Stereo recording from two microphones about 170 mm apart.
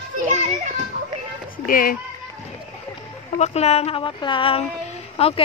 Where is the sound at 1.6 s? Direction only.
55° left (ahead or behind).